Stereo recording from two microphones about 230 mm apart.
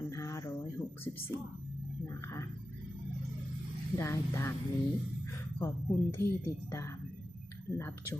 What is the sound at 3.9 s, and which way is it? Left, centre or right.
Speech, centre.